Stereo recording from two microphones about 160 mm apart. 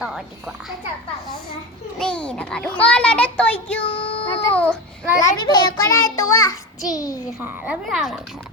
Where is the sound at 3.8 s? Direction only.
35° left (ahead or behind).